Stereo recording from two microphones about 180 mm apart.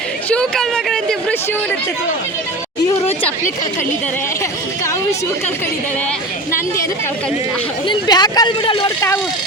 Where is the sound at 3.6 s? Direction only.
10° left (ahead or behind).